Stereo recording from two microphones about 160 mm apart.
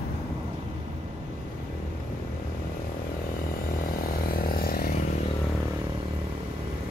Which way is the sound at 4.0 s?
65° left (ahead or behind).